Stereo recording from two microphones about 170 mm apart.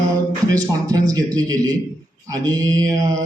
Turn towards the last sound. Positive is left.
turn(degrees=-20)  # may be behind; listen again after turning